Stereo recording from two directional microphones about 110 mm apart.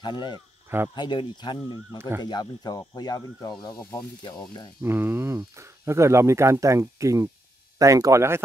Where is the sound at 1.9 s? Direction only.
25° right (ahead or behind).